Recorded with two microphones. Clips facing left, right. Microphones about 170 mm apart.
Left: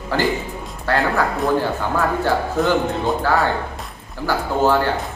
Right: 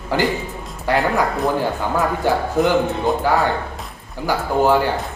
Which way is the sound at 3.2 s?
15° right (ahead or behind).